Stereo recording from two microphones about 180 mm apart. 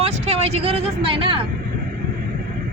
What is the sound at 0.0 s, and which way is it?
Speech, 35° right (ahead or behind).